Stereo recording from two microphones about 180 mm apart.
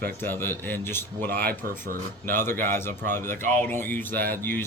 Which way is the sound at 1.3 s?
60° right (ahead or behind).